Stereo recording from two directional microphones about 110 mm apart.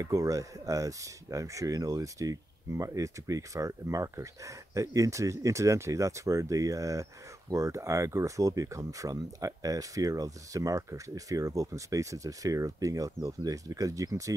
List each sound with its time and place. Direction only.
0.0 s speech: 30° right (ahead or behind)